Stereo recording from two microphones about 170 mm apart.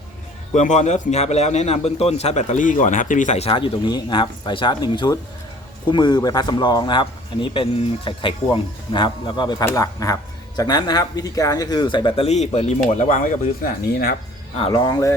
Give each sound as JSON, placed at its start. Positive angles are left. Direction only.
{"t": 0.5, "sound": "a man's voice", "side_deg": 45}
{"t": 14.5, "sound": "speech", "side_deg": 30}